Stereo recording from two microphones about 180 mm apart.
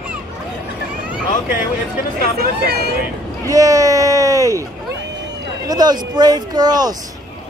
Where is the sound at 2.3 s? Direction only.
60° right (ahead or behind).